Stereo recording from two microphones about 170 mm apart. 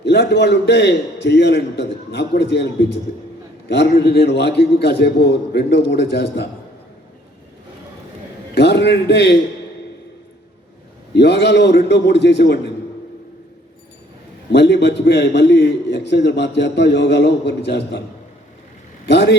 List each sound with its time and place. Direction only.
0.0 s a man's voice: 90° left
8.5 s a man's voice: 90° left
11.1 s a man's voice: 90° left
14.5 s a man's voice: 90° left
19.0 s a man's voice: 90° left